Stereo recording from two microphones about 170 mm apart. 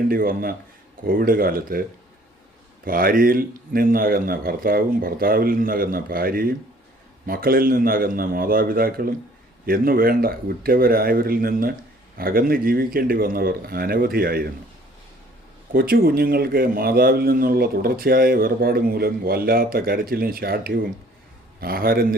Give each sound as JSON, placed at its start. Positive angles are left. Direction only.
{"t": 0.1, "sound": "a man's voice", "side_deg": -60}
{"t": 2.8, "sound": "a man's voice", "side_deg": -55}
{"t": 15.7, "sound": "a man's voice", "side_deg": -65}